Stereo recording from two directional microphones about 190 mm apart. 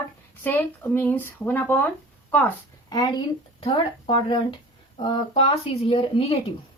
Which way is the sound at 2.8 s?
20° left (ahead or behind).